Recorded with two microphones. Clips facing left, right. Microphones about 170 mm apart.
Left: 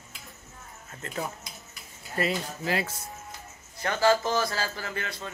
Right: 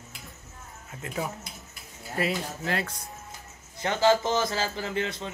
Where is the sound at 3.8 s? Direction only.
20° right (ahead or behind).